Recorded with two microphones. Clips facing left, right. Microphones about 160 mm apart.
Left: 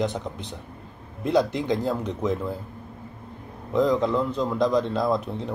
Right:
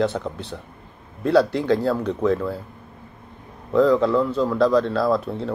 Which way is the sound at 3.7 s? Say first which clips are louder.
Right 5 dB; 20° left (ahead or behind).